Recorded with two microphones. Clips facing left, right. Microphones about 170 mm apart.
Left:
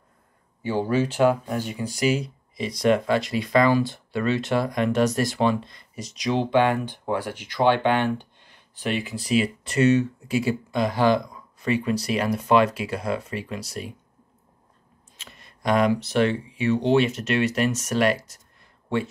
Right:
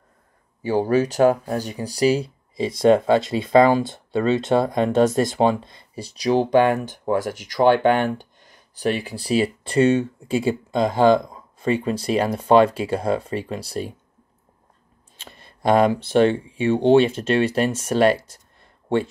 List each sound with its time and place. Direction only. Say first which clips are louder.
0.6 s speech: right 4 dB; 40° right (ahead or behind)
15.1 s speech: right 4 dB; 30° right (ahead or behind)